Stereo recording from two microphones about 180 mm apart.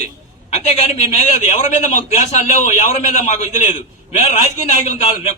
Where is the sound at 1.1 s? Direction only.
40° left (ahead or behind).